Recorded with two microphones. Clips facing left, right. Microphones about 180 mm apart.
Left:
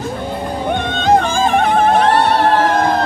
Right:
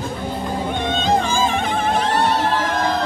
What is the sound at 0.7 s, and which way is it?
Music, 60° left (ahead or behind).